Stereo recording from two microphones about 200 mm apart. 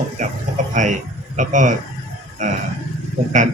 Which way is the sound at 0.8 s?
40° right (ahead or behind).